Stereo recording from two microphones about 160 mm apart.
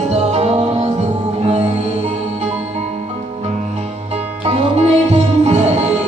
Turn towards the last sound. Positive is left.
turn(degrees=-45)  # may be behind; listen again after turning